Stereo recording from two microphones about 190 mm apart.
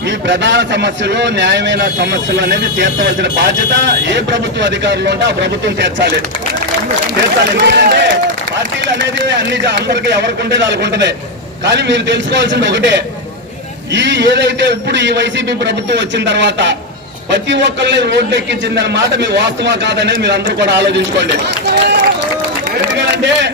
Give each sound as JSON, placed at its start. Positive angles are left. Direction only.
{"t": 0.3, "sound": "a man's voice", "side_deg": -70}
{"t": 7.2, "sound": "speech", "side_deg": -65}
{"t": 9.0, "sound": "a man's voice", "side_deg": -70}